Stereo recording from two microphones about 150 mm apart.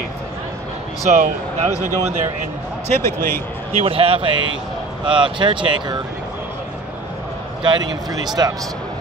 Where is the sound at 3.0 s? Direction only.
15° left (ahead or behind).